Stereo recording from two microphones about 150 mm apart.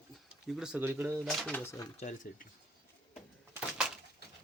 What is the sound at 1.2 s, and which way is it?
Speech, centre (ahead or behind).